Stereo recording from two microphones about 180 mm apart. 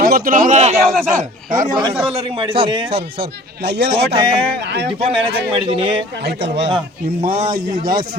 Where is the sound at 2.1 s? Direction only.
30° right (ahead or behind).